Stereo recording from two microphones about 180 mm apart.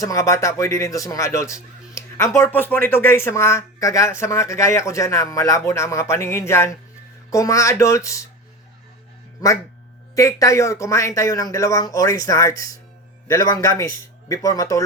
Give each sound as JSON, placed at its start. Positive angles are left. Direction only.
{"t": 0.0, "sound": "a man's voice", "side_deg": 20}
{"t": 10.2, "sound": "a man's voice", "side_deg": 15}